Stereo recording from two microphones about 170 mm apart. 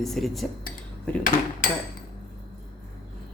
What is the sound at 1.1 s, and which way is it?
Dishes, 10° left (ahead or behind).